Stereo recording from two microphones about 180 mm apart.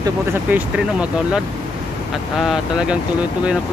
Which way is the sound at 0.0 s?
10° right (ahead or behind).